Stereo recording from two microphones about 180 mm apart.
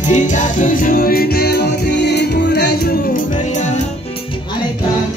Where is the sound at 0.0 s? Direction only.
45° left (ahead or behind).